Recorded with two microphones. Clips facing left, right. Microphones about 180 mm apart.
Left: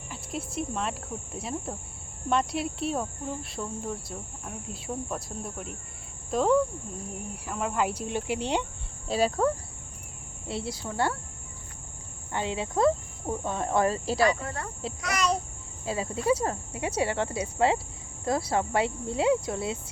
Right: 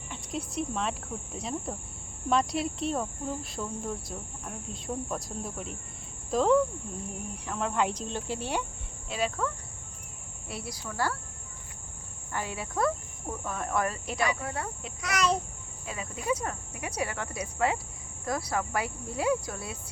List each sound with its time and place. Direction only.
0.1 s cricket: centre (ahead or behind)
7.4 s speech: 5° left (ahead or behind)
9.0 s speech: 35° left (ahead or behind)
10.5 s cricket: 25° left (ahead or behind)
12.3 s cricket: 25° left (ahead or behind)
14.3 s cricket: 10° right (ahead or behind)
15.0 s cricket: centre (ahead or behind)
15.9 s cricket: 30° left (ahead or behind)